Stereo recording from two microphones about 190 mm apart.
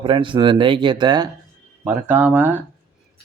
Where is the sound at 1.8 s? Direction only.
10° right (ahead or behind).